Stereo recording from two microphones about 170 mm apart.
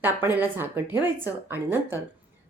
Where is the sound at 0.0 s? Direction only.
10° right (ahead or behind).